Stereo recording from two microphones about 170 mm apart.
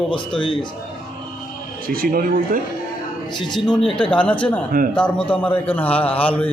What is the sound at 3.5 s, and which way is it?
A man's voice, centre (ahead or behind).